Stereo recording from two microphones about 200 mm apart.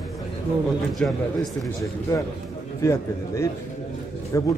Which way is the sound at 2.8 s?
15° left (ahead or behind).